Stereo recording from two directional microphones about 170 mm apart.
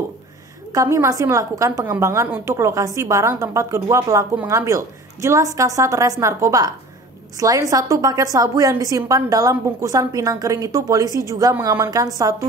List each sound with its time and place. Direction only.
0.7 s a woman's voice: 15° right (ahead or behind)